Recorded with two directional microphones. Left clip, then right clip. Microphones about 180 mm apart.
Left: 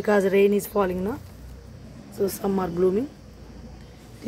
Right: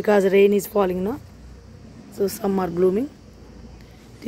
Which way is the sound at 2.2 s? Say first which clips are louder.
Right 2 dB; 20° right (ahead or behind).